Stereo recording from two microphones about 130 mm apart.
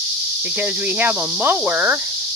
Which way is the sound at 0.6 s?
10° right (ahead or behind).